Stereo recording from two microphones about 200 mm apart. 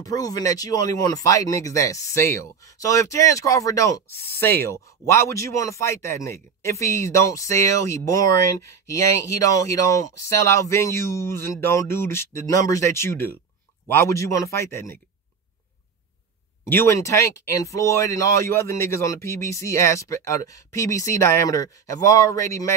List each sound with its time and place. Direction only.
0.0 s speech: 20° left (ahead or behind)
16.6 s speech: 15° left (ahead or behind)